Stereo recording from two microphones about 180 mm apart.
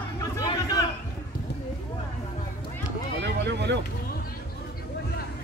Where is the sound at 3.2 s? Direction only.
70° right (ahead or behind).